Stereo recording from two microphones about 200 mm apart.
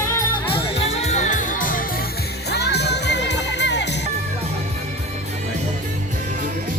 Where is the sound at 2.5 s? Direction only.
55° left (ahead or behind).